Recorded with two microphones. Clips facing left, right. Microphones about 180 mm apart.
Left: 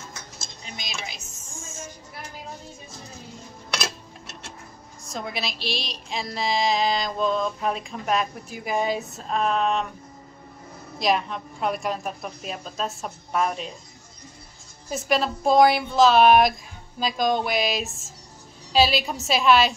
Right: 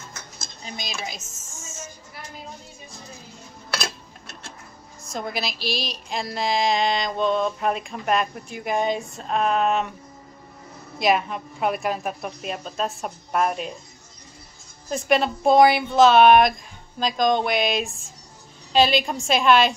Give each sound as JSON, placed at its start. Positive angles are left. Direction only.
{"t": 0.7, "sound": "speech", "side_deg": -40}
{"t": 1.6, "sound": "a sound", "side_deg": 55}
{"t": 5.0, "sound": "speech", "side_deg": 0}
{"t": 11.0, "sound": "speech", "side_deg": -5}
{"t": 14.9, "sound": "speech", "side_deg": 0}